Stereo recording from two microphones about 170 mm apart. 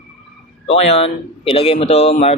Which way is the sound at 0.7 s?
40° left (ahead or behind).